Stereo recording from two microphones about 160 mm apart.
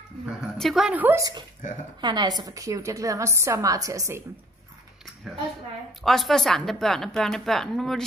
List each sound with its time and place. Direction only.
0.4 s a woman's voice: centre (ahead or behind)
2.0 s a woman's voice: 25° right (ahead or behind)
5.3 s a woman's voice: centre (ahead or behind)